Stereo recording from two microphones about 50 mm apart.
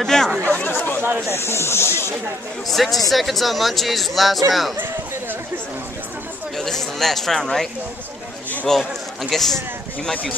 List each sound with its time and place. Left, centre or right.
0.0 s speech: centre
0.6 s chatter: left
1.3 s speech: left
2.7 s speech: centre
6.5 s speech: centre
8.7 s speech: centre